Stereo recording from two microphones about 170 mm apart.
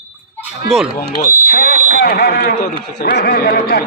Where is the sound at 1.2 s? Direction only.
50° left (ahead or behind).